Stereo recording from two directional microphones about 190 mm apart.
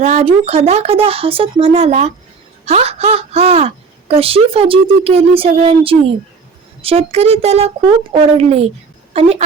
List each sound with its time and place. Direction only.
0.0 s speech: 35° right (ahead or behind)